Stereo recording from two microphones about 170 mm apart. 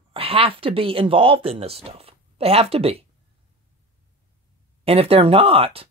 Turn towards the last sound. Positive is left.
turn(degrees=-35)  # may be behind; listen again after turning